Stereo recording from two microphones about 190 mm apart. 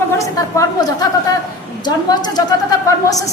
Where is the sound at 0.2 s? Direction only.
15° left (ahead or behind).